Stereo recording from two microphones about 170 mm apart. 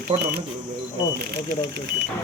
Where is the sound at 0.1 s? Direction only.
30° right (ahead or behind).